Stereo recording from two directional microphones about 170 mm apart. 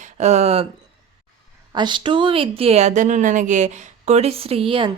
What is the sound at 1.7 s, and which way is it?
Speech, 25° right (ahead or behind).